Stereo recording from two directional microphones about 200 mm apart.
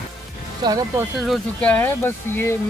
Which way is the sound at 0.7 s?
20° right (ahead or behind).